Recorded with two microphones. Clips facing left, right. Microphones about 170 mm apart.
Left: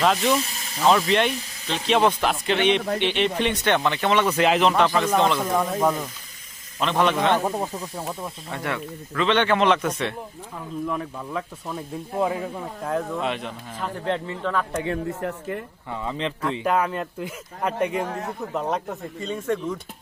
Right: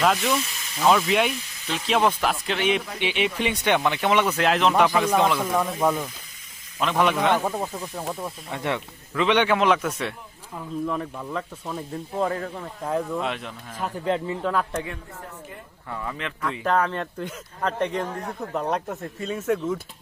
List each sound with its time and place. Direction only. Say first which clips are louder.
0.0 s speech: left 1 dB; centre (ahead or behind)
0.3 s hiss: left 2 dB; 35° left (ahead or behind)
0.8 s a man's voice: left 1 dB; centre (ahead or behind)
7.4 s speech: left 1 dB; 15° left (ahead or behind)
8.4 s a man's voice: right 1 dB; 20° right (ahead or behind)
15.0 s speech: left 11 dB; 70° left (ahead or behind)
15.9 s speech: left 3 dB; 20° left (ahead or behind)
16.6 s speech: right 1 dB; 10° left (ahead or behind)